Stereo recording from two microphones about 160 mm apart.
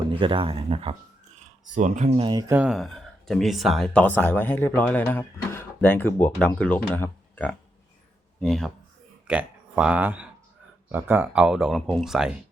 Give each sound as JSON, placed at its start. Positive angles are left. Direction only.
{"t": 0.1, "sound": "speech", "side_deg": -30}
{"t": 1.7, "sound": "speech", "side_deg": -50}
{"t": 2.5, "sound": "speech", "side_deg": -10}
{"t": 2.7, "sound": "speech", "side_deg": 0}